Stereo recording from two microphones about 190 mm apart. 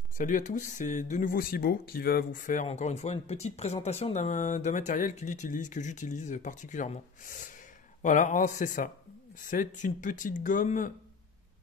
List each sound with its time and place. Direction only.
0.2 s speech: 40° left (ahead or behind)